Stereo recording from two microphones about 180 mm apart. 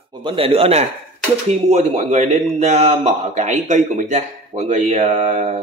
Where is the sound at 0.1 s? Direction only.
30° right (ahead or behind).